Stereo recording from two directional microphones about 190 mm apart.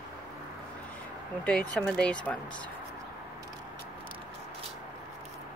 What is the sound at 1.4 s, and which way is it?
Speech, 5° left (ahead or behind).